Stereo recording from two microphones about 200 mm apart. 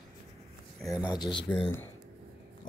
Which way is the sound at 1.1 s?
20° left (ahead or behind).